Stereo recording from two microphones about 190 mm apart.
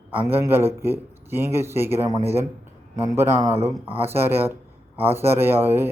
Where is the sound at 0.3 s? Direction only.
10° right (ahead or behind).